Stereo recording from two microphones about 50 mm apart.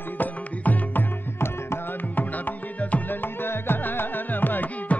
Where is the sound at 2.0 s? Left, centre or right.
Left.